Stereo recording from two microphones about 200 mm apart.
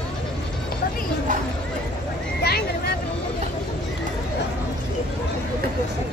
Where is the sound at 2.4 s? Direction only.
50° left (ahead or behind).